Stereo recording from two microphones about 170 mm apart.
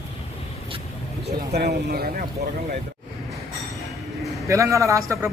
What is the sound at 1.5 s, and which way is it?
Speech, 65° right (ahead or behind).